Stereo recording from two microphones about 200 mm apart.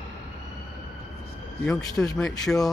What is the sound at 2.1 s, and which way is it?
Speech, centre (ahead or behind).